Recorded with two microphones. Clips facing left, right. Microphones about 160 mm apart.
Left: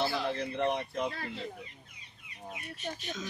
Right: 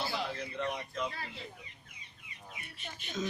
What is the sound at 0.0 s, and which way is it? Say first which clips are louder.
Bird: left 5 dB; 60° left (ahead or behind).